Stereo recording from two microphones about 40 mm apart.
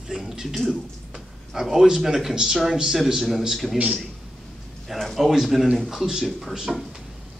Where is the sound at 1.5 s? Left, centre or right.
Centre.